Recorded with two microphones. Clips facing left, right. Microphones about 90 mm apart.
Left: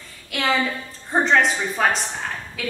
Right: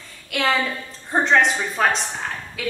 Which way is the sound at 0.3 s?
Centre (ahead or behind).